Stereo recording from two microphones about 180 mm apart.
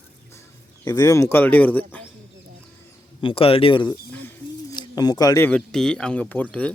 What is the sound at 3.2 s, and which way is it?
Speech, 30° left (ahead or behind).